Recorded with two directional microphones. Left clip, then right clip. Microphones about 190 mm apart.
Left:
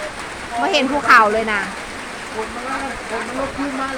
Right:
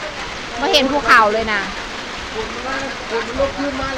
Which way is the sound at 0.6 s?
5° left (ahead or behind).